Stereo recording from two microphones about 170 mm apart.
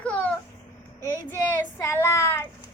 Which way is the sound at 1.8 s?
15° left (ahead or behind).